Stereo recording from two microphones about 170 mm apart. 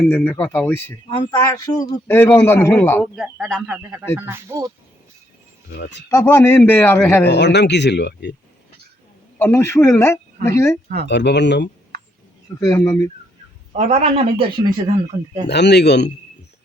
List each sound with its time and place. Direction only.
0.0 s a man's voice: 10° left (ahead or behind)
1.0 s speech: 30° left (ahead or behind)
1.5 s a man's voice: 20° left (ahead or behind)
3.2 s speech: 5° right (ahead or behind)
5.7 s speech: 90° left
6.1 s a man's voice: 15° left (ahead or behind)
7.3 s speech: 90° left
9.4 s a man's voice: 15° left (ahead or behind)
11.1 s speech: 90° left
12.5 s speech: 20° left (ahead or behind)
13.7 s a man's voice: 40° right (ahead or behind)
15.4 s speech: 80° left